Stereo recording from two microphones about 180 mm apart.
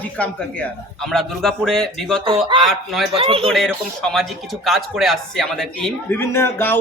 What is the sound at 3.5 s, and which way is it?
Speech, centre (ahead or behind).